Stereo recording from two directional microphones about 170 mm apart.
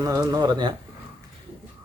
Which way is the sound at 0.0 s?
20° right (ahead or behind).